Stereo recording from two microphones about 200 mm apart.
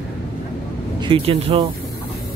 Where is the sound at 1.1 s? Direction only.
30° right (ahead or behind).